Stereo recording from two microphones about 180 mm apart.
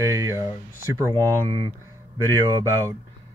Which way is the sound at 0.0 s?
15° right (ahead or behind).